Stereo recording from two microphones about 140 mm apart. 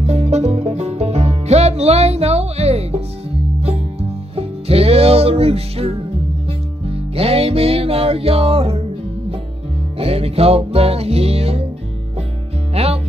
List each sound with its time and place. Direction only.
0.0 s music: 50° right (ahead or behind)
4.4 s music: 45° right (ahead or behind)
9.9 s music: 45° right (ahead or behind)
12.7 s music: 45° right (ahead or behind)